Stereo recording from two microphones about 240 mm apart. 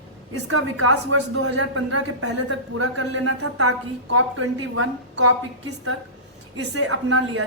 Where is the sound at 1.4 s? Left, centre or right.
Right.